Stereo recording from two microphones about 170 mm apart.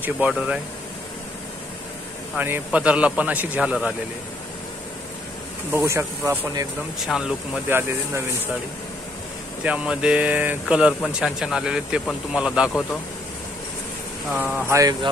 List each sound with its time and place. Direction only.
0.0 s a man's voice: 5° right (ahead or behind)
2.3 s a man's voice: 10° right (ahead or behind)
5.8 s a man's voice: 15° right (ahead or behind)
7.1 s speech: centre (ahead or behind)
9.6 s speech: 5° right (ahead or behind)
14.7 s mantra: 20° right (ahead or behind)